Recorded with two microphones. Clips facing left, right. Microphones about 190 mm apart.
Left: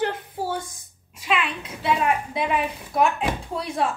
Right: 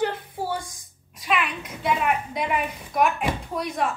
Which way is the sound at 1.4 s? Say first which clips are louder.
Even; 30° left (ahead or behind).